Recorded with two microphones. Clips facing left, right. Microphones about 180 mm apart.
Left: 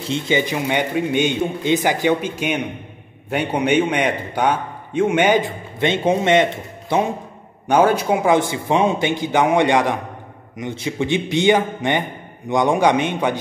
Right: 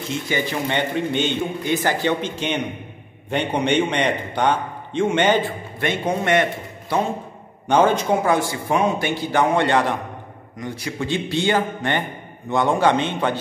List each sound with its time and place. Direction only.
0.1 s a man's voice: 20° left (ahead or behind)
7.6 s a man's voice: 10° left (ahead or behind)
8.3 s a man's voice: 20° left (ahead or behind)